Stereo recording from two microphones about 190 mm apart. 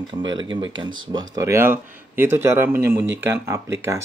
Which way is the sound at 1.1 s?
20° right (ahead or behind).